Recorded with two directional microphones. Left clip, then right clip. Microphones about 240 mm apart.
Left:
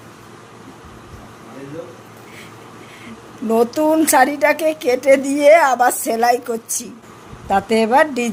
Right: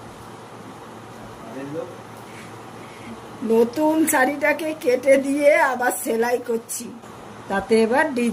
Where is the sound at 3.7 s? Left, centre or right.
Left.